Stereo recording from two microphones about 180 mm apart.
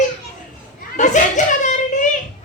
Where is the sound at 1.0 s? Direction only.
45° left (ahead or behind).